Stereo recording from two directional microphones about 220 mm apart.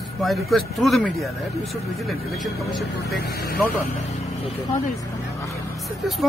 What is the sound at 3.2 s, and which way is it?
Speech, 45° left (ahead or behind).